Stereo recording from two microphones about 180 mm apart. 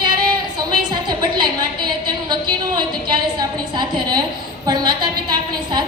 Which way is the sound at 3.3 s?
25° right (ahead or behind).